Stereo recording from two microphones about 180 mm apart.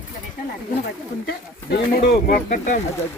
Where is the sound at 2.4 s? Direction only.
45° left (ahead or behind).